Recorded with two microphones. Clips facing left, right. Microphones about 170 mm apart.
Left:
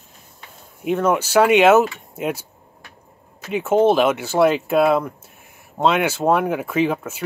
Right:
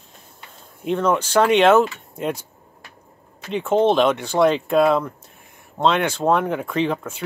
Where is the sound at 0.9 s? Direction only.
5° left (ahead or behind).